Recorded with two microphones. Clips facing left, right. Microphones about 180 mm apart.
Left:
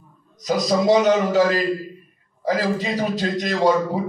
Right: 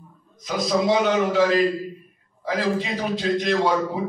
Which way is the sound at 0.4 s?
40° left (ahead or behind).